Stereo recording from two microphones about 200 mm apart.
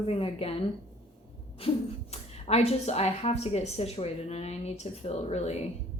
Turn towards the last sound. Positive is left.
turn(degrees=35)  # may be behind; listen again after turning